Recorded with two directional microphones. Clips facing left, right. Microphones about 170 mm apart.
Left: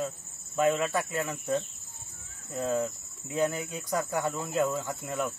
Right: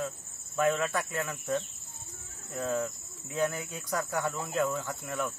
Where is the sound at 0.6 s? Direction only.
20° left (ahead or behind).